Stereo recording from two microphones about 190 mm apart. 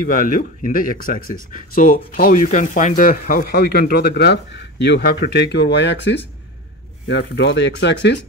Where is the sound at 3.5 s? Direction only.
60° left (ahead or behind).